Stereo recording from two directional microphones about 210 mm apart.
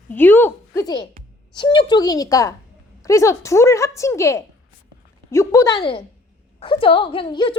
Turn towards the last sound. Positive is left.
turn(degrees=25)  # may be behind; listen again after turning